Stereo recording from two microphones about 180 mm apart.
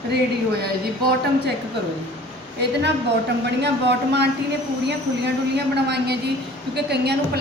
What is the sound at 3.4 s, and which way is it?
A woman's voice, 70° right (ahead or behind).